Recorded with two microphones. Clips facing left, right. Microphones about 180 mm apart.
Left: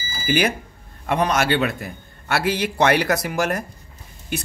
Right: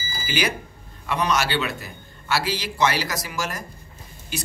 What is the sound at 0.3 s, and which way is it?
A man's voice, 50° left (ahead or behind).